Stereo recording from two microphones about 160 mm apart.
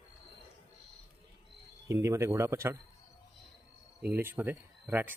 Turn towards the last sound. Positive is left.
turn(degrees=-15)  # may be behind; listen again after turning